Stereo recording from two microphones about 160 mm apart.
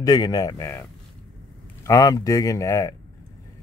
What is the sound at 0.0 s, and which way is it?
Speech, 25° left (ahead or behind).